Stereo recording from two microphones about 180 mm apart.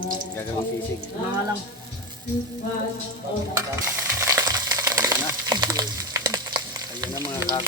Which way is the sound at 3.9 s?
15° right (ahead or behind).